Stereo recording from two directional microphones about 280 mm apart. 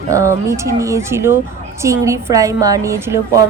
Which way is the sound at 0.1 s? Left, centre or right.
Centre.